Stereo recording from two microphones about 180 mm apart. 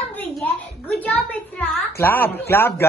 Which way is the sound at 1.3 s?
10° left (ahead or behind).